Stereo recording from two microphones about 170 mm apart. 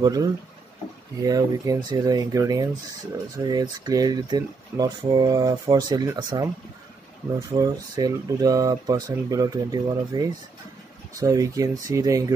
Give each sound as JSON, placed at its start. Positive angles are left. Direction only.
{"t": 0.0, "sound": "speech", "side_deg": -20}